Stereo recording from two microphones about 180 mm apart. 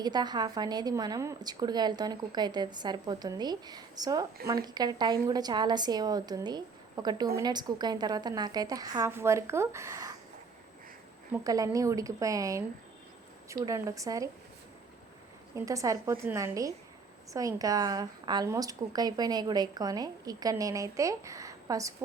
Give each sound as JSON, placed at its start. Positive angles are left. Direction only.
{"t": 0.0, "sound": "a woman's voice", "side_deg": -25}
{"t": 11.3, "sound": "speech", "side_deg": -20}
{"t": 13.7, "sound": "a woman's voice", "side_deg": -15}
{"t": 15.5, "sound": "a woman's voice", "side_deg": -20}